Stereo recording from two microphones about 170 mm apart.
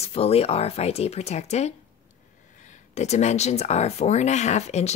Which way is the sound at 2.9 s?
40° left (ahead or behind).